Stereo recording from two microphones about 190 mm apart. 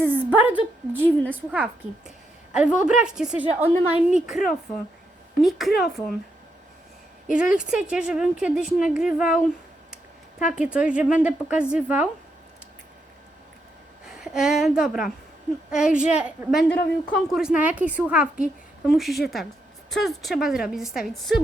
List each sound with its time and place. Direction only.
0.1 s a woman's voice: 10° right (ahead or behind)
0.9 s a woman's voice: 10° left (ahead or behind)
1.3 s a woman's voice: 10° right (ahead or behind)
7.3 s a woman's voice: 5° right (ahead or behind)
10.5 s a woman's voice: 5° right (ahead or behind)
14.0 s a woman's voice: 5° right (ahead or behind)